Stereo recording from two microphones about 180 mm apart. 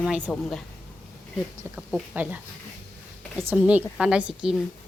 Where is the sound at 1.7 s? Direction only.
5° right (ahead or behind).